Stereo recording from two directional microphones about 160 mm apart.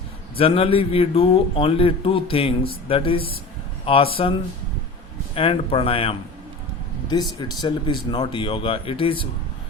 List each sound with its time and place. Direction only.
0.3 s a man's voice: 35° left (ahead or behind)
7.1 s a man's voice: 25° left (ahead or behind)